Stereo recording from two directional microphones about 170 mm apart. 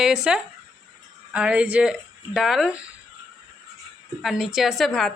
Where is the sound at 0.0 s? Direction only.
5° right (ahead or behind).